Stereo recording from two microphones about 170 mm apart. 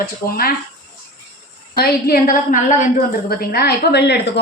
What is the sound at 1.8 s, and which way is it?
Speech, 60° left (ahead or behind).